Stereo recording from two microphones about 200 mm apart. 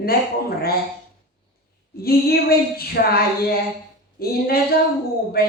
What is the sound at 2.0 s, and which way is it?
Speech, 50° left (ahead or behind).